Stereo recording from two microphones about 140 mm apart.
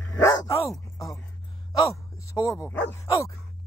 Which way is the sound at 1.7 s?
25° left (ahead or behind).